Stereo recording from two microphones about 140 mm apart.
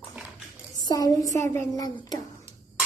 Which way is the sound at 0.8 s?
25° left (ahead or behind).